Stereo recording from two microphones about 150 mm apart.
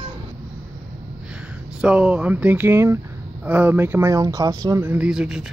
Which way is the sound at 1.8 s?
5° right (ahead or behind).